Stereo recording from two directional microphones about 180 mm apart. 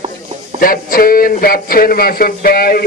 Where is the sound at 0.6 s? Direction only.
50° left (ahead or behind).